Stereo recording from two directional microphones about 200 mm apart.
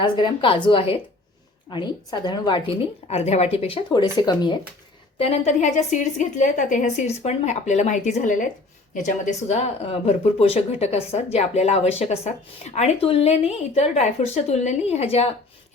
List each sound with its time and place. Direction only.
0.0 s a woman's voice: 25° left (ahead or behind)
3.1 s speech: 30° left (ahead or behind)
3.9 s a woman's voice: 20° left (ahead or behind)
5.1 s speech: 30° left (ahead or behind)